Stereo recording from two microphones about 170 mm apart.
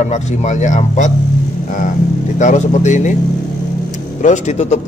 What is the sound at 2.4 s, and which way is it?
A man's voice, 45° left (ahead or behind).